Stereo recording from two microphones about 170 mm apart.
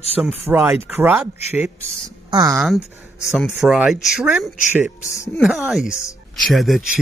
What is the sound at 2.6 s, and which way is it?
Speech, 5° right (ahead or behind).